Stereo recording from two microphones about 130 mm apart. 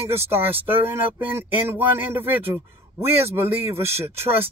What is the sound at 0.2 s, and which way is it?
A man's voice, 15° right (ahead or behind).